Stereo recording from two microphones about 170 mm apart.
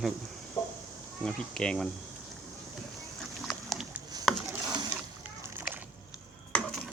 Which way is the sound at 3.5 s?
Centre (ahead or behind).